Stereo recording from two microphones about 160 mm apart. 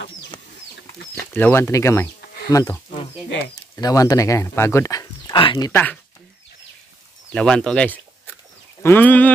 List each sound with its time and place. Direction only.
1.1 s speech: 10° left (ahead or behind); by 5.7 s 30° left (ahead or behind)
5.7 s speech: 10° left (ahead or behind)
7.3 s speech: 5° left (ahead or behind)